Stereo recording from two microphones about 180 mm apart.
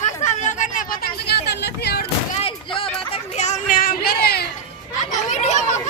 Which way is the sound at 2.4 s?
30° left (ahead or behind).